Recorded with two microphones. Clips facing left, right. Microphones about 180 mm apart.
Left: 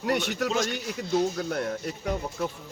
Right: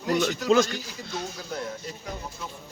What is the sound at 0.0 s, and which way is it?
A man's voice, 65° left (ahead or behind).